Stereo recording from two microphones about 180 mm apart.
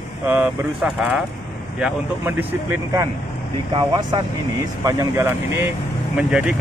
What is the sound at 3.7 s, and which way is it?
Speech, 25° right (ahead or behind).